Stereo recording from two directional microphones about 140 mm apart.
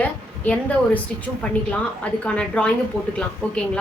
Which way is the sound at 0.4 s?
10° left (ahead or behind).